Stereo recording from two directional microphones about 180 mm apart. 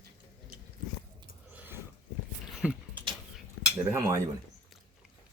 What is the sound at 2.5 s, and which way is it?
Dog, 5° right (ahead or behind).